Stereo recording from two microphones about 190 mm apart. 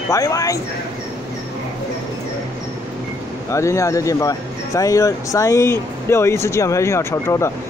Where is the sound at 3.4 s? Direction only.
15° left (ahead or behind).